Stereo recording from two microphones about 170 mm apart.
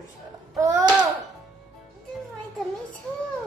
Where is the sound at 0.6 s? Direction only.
20° right (ahead or behind).